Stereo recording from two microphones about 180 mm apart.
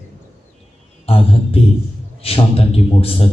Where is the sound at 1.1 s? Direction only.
35° left (ahead or behind).